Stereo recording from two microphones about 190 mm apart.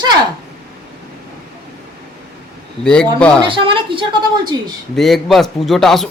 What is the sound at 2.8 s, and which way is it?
Speech, 5° left (ahead or behind).